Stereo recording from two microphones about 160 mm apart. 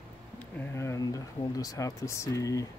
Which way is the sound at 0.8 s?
20° left (ahead or behind).